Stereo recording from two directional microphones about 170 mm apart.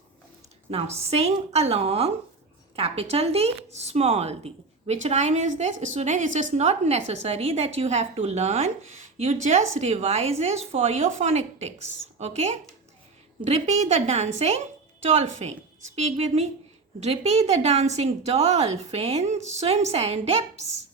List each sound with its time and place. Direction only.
0.7 s a woman's voice: 40° right (ahead or behind)